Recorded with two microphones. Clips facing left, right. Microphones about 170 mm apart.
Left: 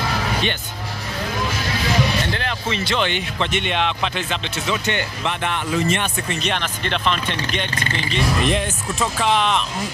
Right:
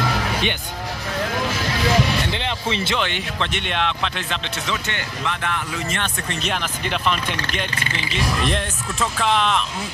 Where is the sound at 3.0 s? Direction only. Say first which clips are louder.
Left 2 dB; centre (ahead or behind).